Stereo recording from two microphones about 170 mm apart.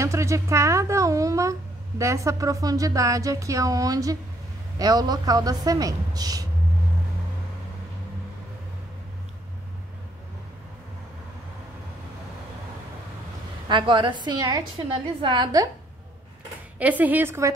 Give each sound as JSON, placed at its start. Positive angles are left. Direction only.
{"t": 0.0, "sound": "speech", "side_deg": -15}
{"t": 13.7, "sound": "speech", "side_deg": -30}
{"t": 16.7, "sound": "a woman's voice", "side_deg": -10}